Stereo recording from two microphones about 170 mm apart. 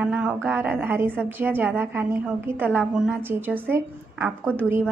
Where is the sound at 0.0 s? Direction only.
5° right (ahead or behind).